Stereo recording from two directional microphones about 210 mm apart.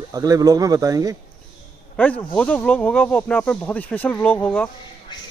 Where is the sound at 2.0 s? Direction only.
5° left (ahead or behind).